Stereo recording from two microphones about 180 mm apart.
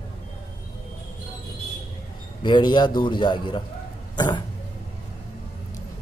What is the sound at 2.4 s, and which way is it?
Speech, 25° left (ahead or behind).